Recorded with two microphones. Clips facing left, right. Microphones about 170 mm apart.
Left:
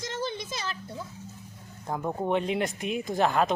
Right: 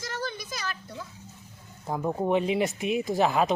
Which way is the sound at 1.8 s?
5° right (ahead or behind).